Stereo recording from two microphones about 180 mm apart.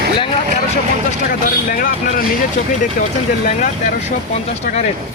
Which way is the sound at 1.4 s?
50° left (ahead or behind).